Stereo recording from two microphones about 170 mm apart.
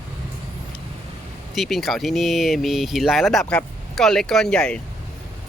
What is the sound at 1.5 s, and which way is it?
Speech, centre (ahead or behind).